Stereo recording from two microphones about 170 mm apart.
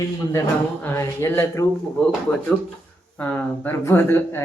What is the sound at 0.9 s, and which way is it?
Speech, 15° left (ahead or behind).